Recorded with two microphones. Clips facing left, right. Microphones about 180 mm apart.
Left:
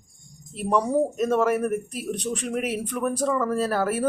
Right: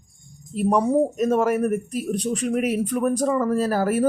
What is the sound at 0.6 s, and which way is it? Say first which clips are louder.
Speech: right 3 dB; 5° right (ahead or behind).